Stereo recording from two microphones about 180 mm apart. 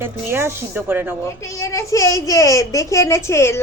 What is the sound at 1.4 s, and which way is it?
A woman's voice, 15° left (ahead or behind).